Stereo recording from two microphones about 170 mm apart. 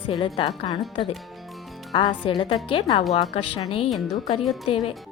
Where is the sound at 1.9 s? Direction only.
25° left (ahead or behind).